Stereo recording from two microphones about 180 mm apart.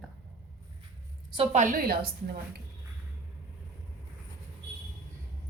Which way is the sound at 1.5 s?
45° right (ahead or behind).